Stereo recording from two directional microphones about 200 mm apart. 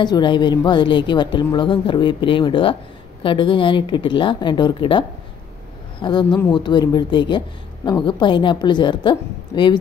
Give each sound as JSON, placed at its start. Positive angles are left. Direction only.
{"t": 0.0, "sound": "a woman's voice", "side_deg": 20}